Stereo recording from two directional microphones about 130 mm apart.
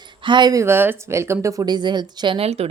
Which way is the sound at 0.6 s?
20° right (ahead or behind).